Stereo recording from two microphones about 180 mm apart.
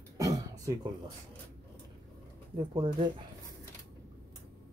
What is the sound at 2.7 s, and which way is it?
Speech, 25° right (ahead or behind).